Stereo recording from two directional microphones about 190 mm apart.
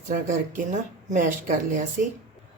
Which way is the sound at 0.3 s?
40° right (ahead or behind).